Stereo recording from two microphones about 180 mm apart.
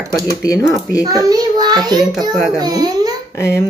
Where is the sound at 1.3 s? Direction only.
20° right (ahead or behind).